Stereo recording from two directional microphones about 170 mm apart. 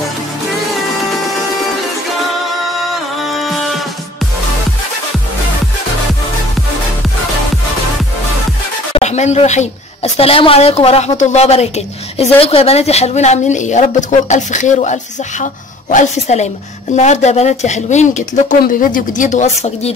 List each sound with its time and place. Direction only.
2.9 s music: centre (ahead or behind)
8.9 s a woman's voice: 40° left (ahead or behind)